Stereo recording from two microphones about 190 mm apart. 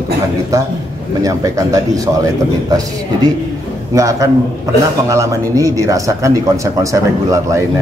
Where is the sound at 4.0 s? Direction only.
15° right (ahead or behind).